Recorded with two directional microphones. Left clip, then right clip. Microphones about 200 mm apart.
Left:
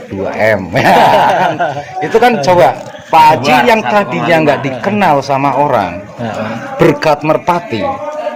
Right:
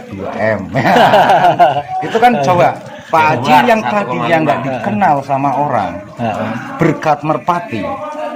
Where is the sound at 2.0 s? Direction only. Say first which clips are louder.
Left 3 dB; 45° left (ahead or behind).